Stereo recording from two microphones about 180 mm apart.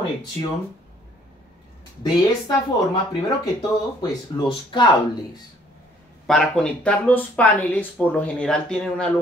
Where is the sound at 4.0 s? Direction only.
25° left (ahead or behind).